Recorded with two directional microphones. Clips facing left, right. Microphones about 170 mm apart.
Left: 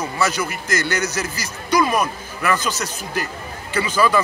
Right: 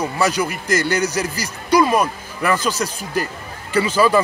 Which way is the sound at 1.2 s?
35° right (ahead or behind).